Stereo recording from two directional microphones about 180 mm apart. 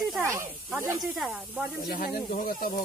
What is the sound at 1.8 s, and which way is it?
Speech, 55° left (ahead or behind).